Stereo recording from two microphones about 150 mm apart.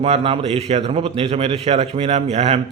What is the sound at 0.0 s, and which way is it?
A man's voice, 40° right (ahead or behind).